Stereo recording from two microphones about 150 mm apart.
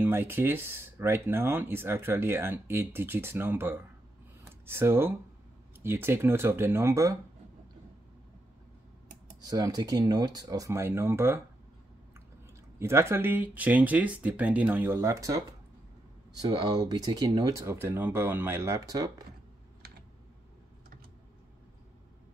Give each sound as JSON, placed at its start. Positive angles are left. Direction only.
{"t": 0.0, "sound": "speech", "side_deg": -15}
{"t": 9.4, "sound": "speech", "side_deg": -25}
{"t": 12.7, "sound": "speech", "side_deg": -15}